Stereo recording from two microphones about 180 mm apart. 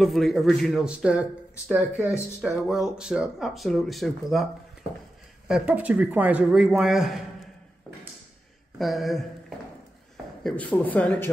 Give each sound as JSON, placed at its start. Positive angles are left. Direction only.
{"t": 0.0, "sound": "speech", "side_deg": 0}
{"t": 5.5, "sound": "speech", "side_deg": -5}
{"t": 8.7, "sound": "speech", "side_deg": 0}
{"t": 10.4, "sound": "speech", "side_deg": 10}